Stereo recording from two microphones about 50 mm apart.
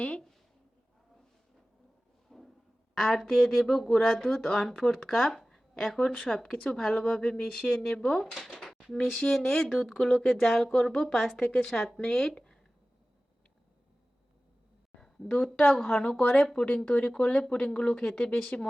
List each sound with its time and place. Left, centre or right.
2.3 s a sound: centre
2.9 s speech: centre
8.4 s a sound: centre
9.1 s speech: centre
15.0 s speech: centre
18.4 s speech: left